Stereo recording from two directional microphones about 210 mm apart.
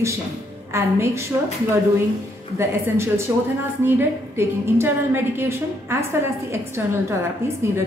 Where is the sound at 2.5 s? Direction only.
10° right (ahead or behind).